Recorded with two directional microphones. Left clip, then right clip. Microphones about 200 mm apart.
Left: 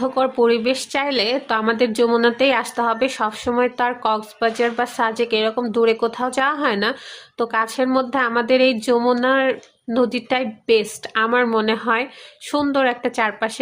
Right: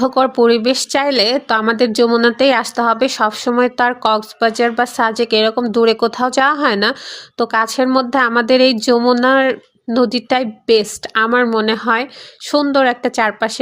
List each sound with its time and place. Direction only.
0.0 s a woman's voice: 30° right (ahead or behind)